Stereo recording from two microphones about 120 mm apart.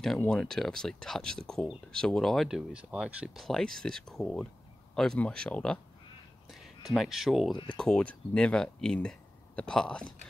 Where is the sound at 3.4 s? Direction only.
5° left (ahead or behind).